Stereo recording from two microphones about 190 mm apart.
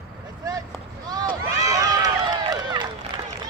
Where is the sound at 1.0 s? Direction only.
20° right (ahead or behind).